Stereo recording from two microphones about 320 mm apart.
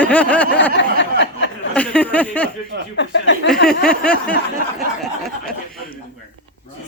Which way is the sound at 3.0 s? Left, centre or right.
Left.